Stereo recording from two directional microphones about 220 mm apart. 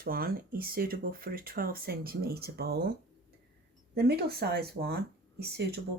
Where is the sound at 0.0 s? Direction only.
45° right (ahead or behind).